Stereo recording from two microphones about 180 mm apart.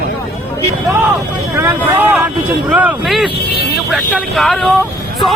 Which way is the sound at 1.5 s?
15° right (ahead or behind).